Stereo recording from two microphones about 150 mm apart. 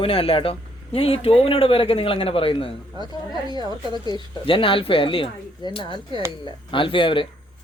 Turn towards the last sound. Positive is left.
turn(degrees=35)  # may be behind; listen again after turning